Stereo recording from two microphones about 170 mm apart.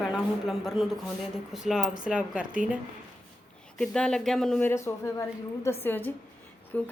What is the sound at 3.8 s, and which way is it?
Speech, 5° left (ahead or behind).